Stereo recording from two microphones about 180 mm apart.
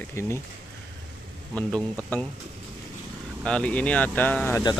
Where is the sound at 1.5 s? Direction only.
5° left (ahead or behind).